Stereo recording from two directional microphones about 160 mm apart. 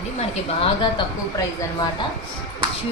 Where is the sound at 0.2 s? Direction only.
35° left (ahead or behind).